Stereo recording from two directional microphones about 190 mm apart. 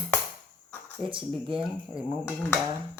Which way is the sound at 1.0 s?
25° right (ahead or behind).